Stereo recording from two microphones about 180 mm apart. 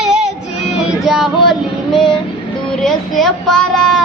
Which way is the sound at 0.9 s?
Centre (ahead or behind).